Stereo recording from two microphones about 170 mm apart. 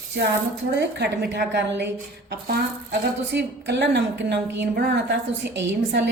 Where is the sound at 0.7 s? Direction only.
85° right.